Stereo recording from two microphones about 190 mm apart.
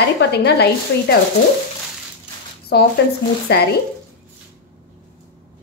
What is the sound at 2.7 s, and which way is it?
Speech, 60° left (ahead or behind).